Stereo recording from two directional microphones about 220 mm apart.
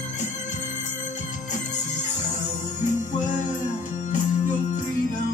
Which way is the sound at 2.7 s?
35° left (ahead or behind).